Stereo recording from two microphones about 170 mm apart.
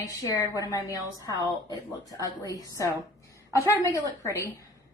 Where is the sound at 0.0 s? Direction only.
20° left (ahead or behind).